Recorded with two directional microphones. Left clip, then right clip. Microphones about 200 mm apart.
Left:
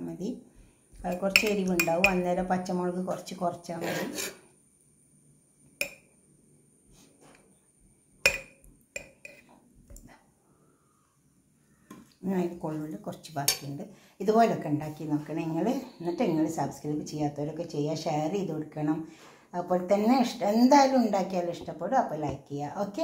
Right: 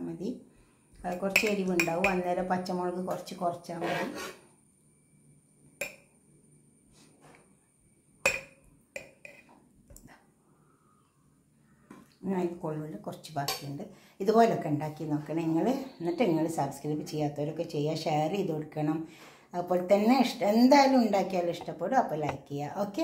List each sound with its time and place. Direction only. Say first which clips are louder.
0.0 s a sound: even; 25° left (ahead or behind)
1.0 s speech: left 3 dB; 20° left (ahead or behind)
10.0 s dog: even; 20° left (ahead or behind)
12.2 s speech: left 1 dB; 25° left (ahead or behind); by 22.9 s 10° left (ahead or behind)